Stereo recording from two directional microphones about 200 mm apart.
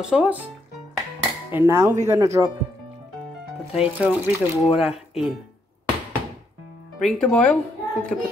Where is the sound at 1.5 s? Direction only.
15° right (ahead or behind).